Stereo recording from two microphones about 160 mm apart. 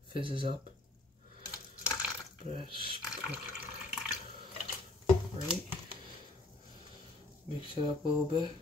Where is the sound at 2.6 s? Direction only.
30° right (ahead or behind).